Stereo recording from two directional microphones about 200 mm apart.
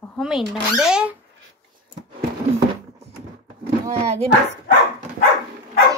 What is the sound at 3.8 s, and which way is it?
Speech, 35° right (ahead or behind).